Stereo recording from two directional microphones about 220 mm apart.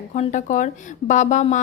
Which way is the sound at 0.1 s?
30° left (ahead or behind).